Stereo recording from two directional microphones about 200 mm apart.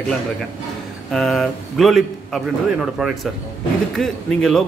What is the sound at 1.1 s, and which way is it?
Speech, centre (ahead or behind).